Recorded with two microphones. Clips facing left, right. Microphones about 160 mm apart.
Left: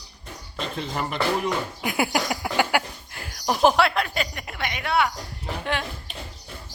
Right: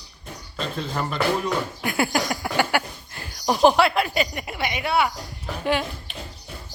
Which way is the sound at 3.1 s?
Centre (ahead or behind).